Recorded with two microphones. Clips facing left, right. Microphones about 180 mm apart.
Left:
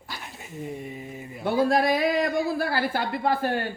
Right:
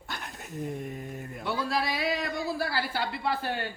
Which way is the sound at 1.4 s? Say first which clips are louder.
Left 9 dB; 50° left (ahead or behind).